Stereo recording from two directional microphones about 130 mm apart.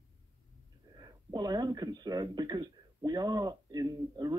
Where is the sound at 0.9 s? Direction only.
30° right (ahead or behind).